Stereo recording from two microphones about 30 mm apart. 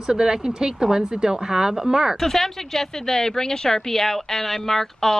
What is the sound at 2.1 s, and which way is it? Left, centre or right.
Speech, centre.